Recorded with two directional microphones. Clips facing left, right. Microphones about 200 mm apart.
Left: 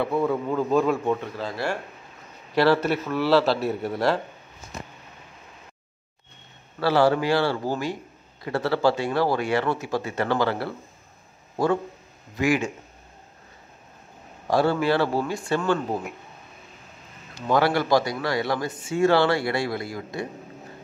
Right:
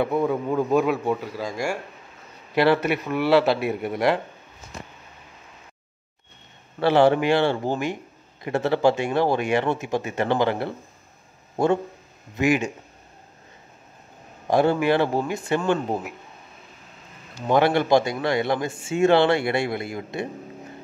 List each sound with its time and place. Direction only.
0.0 s speech: 15° right (ahead or behind)
6.8 s a man's voice: 20° right (ahead or behind)
14.5 s a man's voice: 20° right (ahead or behind)
17.5 s a man's voice: 20° right (ahead or behind)